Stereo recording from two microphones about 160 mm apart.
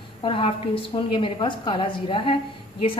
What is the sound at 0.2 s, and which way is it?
A woman's voice, 35° left (ahead or behind).